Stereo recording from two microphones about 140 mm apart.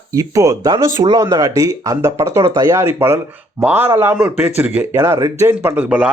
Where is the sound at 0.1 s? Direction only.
25° right (ahead or behind).